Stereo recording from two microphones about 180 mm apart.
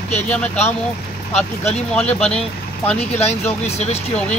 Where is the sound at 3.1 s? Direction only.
35° left (ahead or behind).